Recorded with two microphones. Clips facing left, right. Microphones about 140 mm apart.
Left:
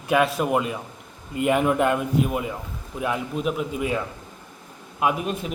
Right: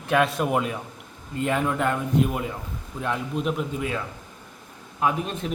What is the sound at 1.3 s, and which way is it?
Speech, 15° left (ahead or behind).